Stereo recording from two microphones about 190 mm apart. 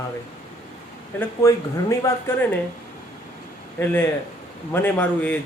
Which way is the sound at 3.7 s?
10° left (ahead or behind).